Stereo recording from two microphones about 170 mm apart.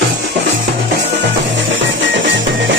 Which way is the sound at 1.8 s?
90° right.